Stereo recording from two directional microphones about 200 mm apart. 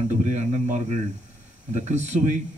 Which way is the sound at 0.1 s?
35° right (ahead or behind).